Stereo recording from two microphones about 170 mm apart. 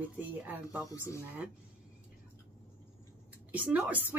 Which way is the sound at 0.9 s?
20° left (ahead or behind).